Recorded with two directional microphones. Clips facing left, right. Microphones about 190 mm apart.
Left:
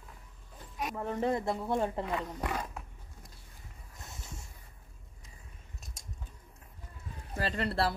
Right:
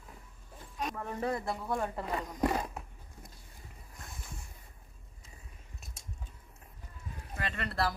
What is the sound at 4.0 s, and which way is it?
Boat, 20° left (ahead or behind).